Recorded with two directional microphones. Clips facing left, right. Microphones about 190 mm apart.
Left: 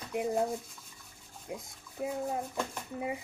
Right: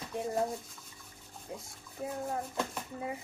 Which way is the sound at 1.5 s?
15° left (ahead or behind).